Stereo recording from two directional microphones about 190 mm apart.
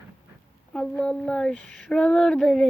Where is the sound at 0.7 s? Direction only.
5° left (ahead or behind).